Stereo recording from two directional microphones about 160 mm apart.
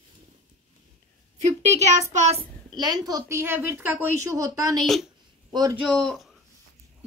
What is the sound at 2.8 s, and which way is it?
A woman's voice, 25° right (ahead or behind).